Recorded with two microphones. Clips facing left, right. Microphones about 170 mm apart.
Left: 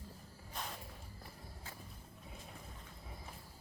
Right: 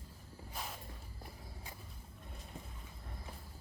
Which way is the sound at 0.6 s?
5° right (ahead or behind).